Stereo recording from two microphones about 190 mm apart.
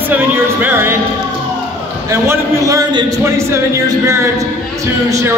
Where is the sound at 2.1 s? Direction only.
15° right (ahead or behind).